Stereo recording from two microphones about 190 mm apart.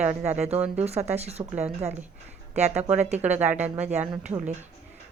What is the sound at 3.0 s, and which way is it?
Speech, 35° right (ahead or behind).